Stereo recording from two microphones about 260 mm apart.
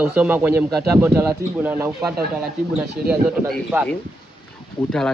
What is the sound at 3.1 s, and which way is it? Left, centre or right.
Speech, centre.